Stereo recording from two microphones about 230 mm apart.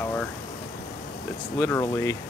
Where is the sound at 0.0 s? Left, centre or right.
Centre.